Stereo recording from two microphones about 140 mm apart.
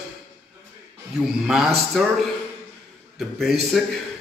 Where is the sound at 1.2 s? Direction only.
5° right (ahead or behind).